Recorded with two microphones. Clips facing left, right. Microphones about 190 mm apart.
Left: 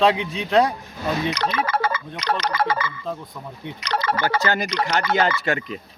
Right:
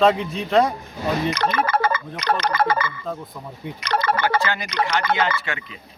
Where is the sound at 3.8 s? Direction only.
55° right (ahead or behind).